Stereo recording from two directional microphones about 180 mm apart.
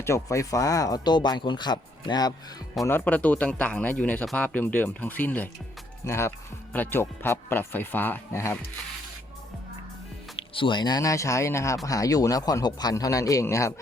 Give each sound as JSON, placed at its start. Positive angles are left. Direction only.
{"t": 0.0, "sound": "speech", "side_deg": 15}
{"t": 2.8, "sound": "speech", "side_deg": 10}
{"t": 10.5, "sound": "speech", "side_deg": 25}